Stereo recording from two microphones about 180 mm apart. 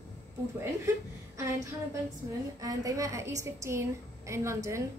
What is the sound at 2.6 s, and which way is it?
A woman's voice, 20° right (ahead or behind).